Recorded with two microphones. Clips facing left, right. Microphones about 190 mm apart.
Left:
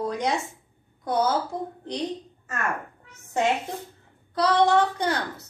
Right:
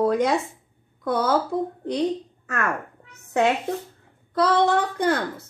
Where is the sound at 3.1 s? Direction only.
60° right (ahead or behind).